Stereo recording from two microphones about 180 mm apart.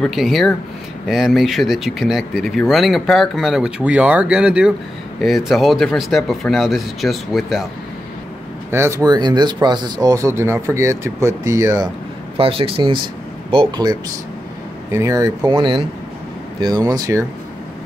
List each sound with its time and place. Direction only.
0.0 s speech: centre (ahead or behind)
8.7 s speech: 15° right (ahead or behind)
12.4 s speech: 30° right (ahead or behind)